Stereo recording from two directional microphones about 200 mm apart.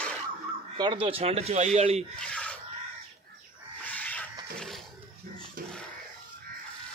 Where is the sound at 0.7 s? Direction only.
25° right (ahead or behind).